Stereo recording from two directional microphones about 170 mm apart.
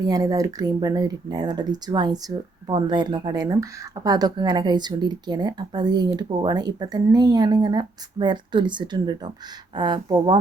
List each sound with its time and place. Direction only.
0.0 s speech: 20° right (ahead or behind)